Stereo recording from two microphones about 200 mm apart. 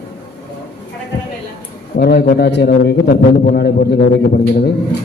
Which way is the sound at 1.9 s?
50° left (ahead or behind).